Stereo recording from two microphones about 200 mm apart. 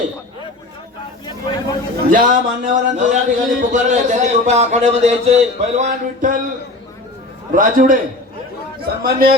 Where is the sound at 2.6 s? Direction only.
35° right (ahead or behind).